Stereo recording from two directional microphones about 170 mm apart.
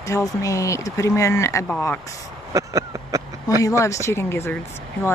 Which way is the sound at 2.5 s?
20° right (ahead or behind).